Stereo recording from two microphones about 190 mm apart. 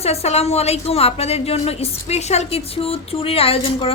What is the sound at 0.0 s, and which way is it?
A woman's voice, 30° left (ahead or behind).